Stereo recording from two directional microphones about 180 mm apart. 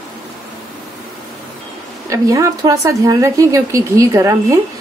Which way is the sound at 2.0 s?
20° right (ahead or behind).